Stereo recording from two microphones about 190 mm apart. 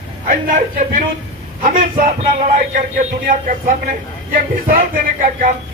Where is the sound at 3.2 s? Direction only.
45° right (ahead or behind).